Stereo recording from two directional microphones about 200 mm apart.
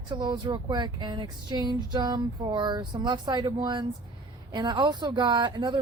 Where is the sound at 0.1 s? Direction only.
20° right (ahead or behind).